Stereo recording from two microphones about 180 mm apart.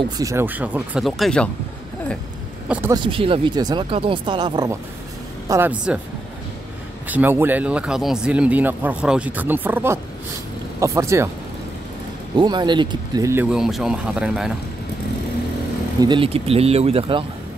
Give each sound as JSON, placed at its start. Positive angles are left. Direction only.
{"t": 0.0, "sound": "speech", "side_deg": -20}
{"t": 2.9, "sound": "speech", "side_deg": -30}
{"t": 5.5, "sound": "speech", "side_deg": -10}
{"t": 7.1, "sound": "speech", "side_deg": -10}
{"t": 12.4, "sound": "speech", "side_deg": -25}
{"t": 13.5, "sound": "speech", "side_deg": 0}
{"t": 16.0, "sound": "speech", "side_deg": -25}